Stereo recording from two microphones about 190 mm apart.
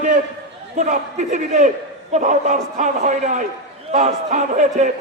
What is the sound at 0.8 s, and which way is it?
A man's voice, 40° right (ahead or behind).